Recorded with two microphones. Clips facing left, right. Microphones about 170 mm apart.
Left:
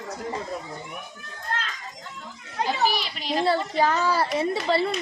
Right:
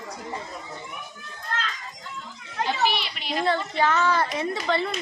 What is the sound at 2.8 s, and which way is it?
A child's voice, 40° left (ahead or behind).